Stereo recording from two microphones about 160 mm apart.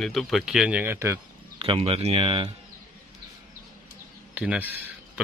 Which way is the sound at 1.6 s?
35° right (ahead or behind).